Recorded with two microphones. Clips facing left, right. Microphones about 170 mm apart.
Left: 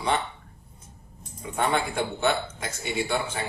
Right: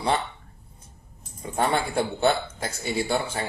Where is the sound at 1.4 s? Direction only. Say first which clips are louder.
Right 1 dB; 35° right (ahead or behind).